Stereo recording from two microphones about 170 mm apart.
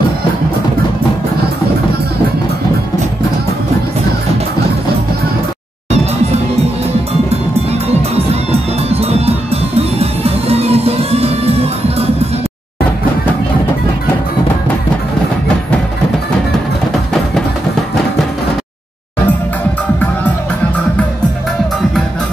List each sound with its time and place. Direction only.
8.3 s music: 35° right (ahead or behind)